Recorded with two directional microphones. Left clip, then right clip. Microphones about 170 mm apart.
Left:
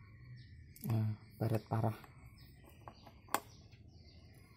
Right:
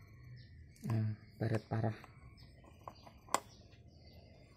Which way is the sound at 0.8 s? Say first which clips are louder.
Even; 5° right (ahead or behind).